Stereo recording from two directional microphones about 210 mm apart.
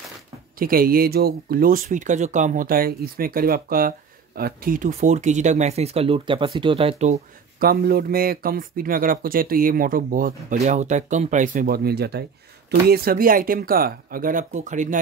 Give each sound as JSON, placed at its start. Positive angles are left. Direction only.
{"t": 0.6, "sound": "speech", "side_deg": -45}